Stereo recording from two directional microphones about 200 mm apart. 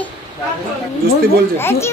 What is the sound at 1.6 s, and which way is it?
Speech, 10° left (ahead or behind).